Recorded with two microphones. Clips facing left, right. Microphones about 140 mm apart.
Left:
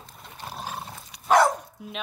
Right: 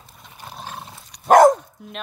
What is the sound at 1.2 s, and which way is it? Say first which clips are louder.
Dog: right 8 dB; 45° right (ahead or behind).